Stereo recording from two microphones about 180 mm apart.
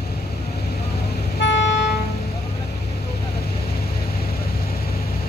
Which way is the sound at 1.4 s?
75° left (ahead or behind).